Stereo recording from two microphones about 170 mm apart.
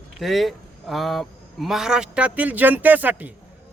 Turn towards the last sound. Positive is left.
turn(degrees=-10)  # may be behind; listen again after turning